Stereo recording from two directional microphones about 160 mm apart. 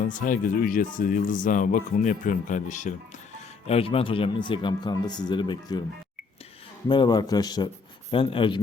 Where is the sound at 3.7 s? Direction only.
40° left (ahead or behind).